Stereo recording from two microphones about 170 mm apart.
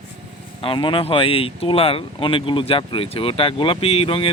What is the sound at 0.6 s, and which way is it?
Speech, 30° left (ahead or behind).